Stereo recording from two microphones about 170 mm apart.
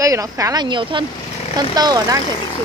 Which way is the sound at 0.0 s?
20° right (ahead or behind).